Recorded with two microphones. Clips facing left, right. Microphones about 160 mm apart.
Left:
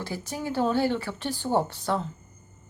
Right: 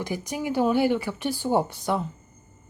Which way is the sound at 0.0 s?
15° right (ahead or behind).